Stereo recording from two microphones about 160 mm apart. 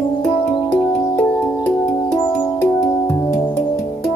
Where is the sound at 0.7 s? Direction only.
10° left (ahead or behind).